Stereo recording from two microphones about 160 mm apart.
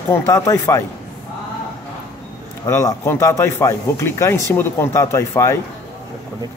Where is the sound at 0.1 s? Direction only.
15° left (ahead or behind).